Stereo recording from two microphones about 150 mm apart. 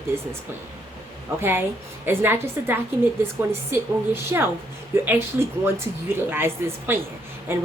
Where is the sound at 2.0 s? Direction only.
15° right (ahead or behind).